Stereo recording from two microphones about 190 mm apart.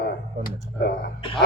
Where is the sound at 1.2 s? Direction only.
25° left (ahead or behind).